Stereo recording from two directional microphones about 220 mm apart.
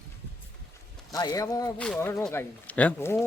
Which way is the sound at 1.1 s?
15° left (ahead or behind).